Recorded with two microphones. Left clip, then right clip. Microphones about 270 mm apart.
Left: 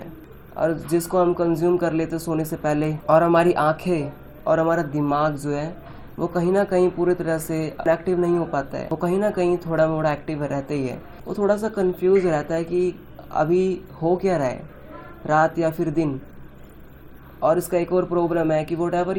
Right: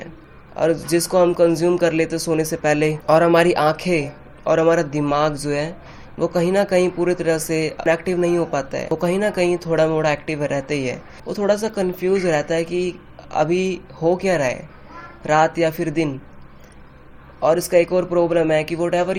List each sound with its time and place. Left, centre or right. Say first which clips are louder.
0.5 s speech: right 4 dB; right
17.4 s speech: right 4 dB; right